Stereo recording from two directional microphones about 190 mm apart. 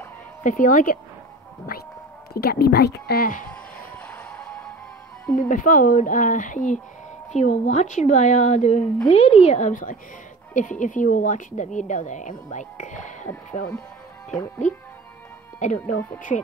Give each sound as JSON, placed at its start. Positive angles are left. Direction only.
{"t": 0.4, "sound": "speech", "side_deg": 45}
{"t": 3.4, "sound": "music", "side_deg": 5}
{"t": 5.3, "sound": "a woman's voice", "side_deg": 45}
{"t": 15.6, "sound": "speech", "side_deg": 40}